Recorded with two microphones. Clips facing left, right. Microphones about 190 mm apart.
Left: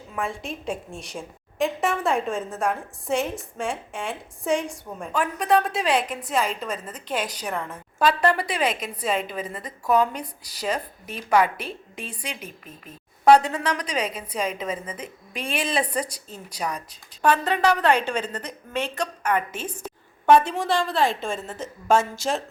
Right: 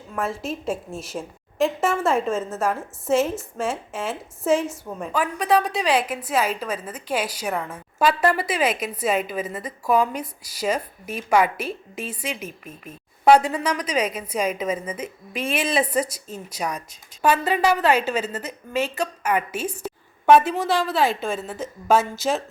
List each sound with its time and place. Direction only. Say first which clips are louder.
0.1 s a woman's voice: right 3 dB; centre (ahead or behind)
16.1 s a woman's voice: right 5 dB; 40° right (ahead or behind)
16.6 s a woman's voice: even; 10° right (ahead or behind)